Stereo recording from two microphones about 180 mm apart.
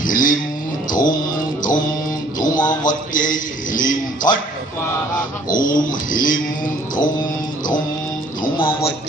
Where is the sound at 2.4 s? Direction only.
25° left (ahead or behind).